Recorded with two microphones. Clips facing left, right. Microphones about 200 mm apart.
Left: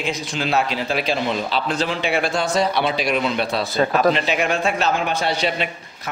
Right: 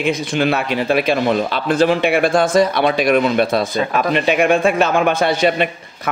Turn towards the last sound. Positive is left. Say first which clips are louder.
# right 7 dB
turn(degrees=-55)  # may be behind; listen again after turning